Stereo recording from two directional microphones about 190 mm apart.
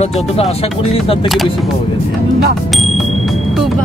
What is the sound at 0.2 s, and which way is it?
Speech, 35° left (ahead or behind).